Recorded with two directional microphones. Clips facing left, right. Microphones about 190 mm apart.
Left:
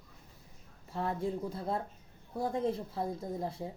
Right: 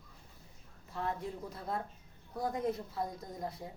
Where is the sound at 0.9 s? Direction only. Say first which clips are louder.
Left 4 dB; 30° left (ahead or behind).